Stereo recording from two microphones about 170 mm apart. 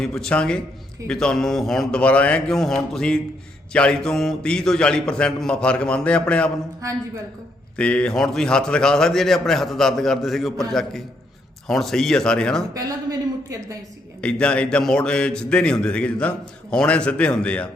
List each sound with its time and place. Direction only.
0.0 s a man's voice: 5° left (ahead or behind)
7.8 s a man's voice: 5° left (ahead or behind)
12.7 s a woman's voice: 20° right (ahead or behind)
14.2 s a man's voice: 5° left (ahead or behind)